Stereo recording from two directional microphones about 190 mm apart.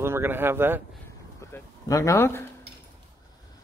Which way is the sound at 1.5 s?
15° left (ahead or behind).